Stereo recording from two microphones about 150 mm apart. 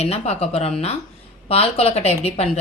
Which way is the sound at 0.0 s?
45° left (ahead or behind).